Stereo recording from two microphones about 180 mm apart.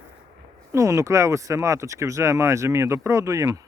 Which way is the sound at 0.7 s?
20° right (ahead or behind).